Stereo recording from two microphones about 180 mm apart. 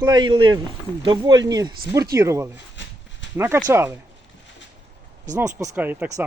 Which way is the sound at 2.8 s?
85° left.